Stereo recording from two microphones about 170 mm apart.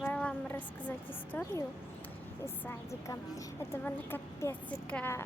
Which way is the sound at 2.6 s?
20° left (ahead or behind).